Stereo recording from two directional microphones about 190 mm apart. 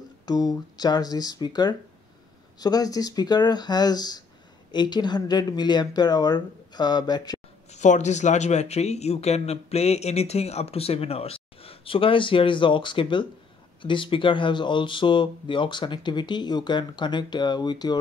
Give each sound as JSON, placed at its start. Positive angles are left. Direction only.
{"t": 0.2, "sound": "speech", "side_deg": 20}
{"t": 7.7, "sound": "speech", "side_deg": 40}